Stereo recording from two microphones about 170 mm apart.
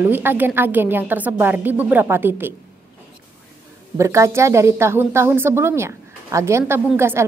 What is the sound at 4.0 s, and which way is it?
A woman's voice, 20° right (ahead or behind).